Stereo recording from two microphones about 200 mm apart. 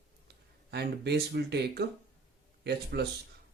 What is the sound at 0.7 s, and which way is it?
Speech, 55° right (ahead or behind).